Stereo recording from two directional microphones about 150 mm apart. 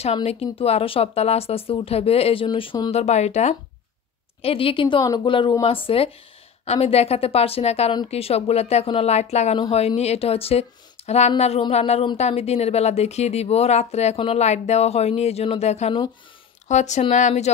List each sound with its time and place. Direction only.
0.0 s speech: 45° left (ahead or behind)